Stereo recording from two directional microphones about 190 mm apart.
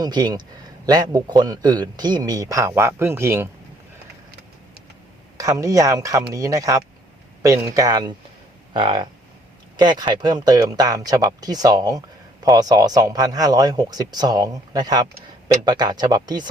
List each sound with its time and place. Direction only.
0.0 s speech: 20° right (ahead or behind)
5.4 s speech: 15° right (ahead or behind)